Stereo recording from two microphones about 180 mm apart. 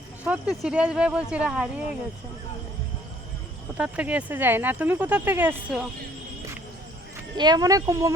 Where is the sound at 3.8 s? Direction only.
5° right (ahead or behind).